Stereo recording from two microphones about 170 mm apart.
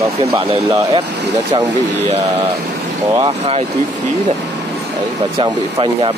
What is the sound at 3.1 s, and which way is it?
Speech, 35° right (ahead or behind).